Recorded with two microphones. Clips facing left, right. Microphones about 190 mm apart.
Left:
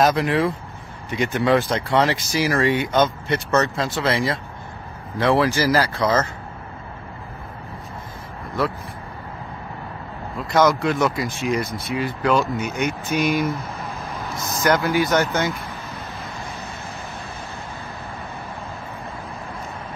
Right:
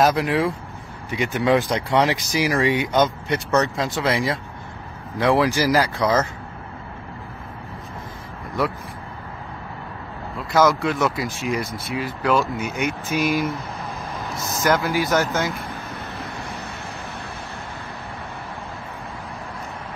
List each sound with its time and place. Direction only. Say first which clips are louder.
0.0 s speech: even; 5° right (ahead or behind)
8.6 s speech: even; 15° right (ahead or behind)
10.3 s speech: even; centre (ahead or behind)